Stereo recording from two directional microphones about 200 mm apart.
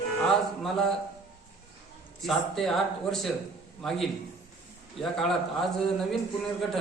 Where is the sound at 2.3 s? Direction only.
Centre (ahead or behind).